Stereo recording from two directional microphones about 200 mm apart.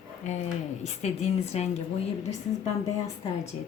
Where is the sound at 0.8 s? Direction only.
35° left (ahead or behind).